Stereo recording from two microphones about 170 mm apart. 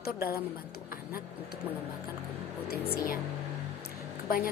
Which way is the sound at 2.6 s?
65° left (ahead or behind).